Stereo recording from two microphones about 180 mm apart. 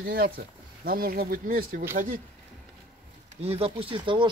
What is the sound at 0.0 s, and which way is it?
Speech, 60° right (ahead or behind).